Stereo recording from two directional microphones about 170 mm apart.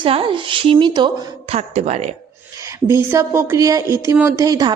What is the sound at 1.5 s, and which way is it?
Speech, 40° right (ahead or behind).